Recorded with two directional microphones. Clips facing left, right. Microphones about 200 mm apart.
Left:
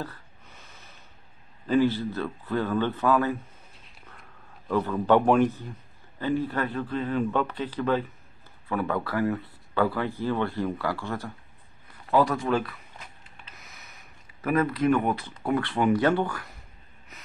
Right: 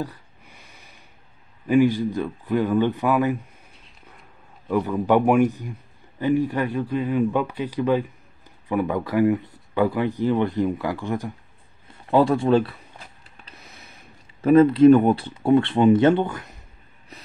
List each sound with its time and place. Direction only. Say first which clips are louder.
0.0 s gasp: right 6 dB; 15° right (ahead or behind)
1.7 s a man's voice: right 5 dB; 15° right (ahead or behind)
4.6 s a man's voice: right 2 dB; 10° right (ahead or behind)
11.9 s a sound: right 5 dB; 25° right (ahead or behind)
14.4 s speech: right 11 dB; 25° right (ahead or behind)
17.1 s snort: right 6 dB; 35° right (ahead or behind)